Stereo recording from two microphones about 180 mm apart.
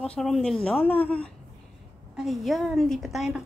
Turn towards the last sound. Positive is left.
turn(degrees=0)  # may be behind; listen again after turning